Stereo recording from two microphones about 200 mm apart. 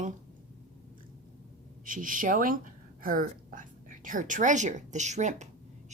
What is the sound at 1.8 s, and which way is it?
A woman's voice, 40° right (ahead or behind).